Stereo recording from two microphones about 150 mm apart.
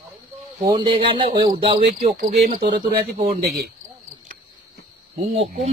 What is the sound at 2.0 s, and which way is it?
Speech, 70° right (ahead or behind).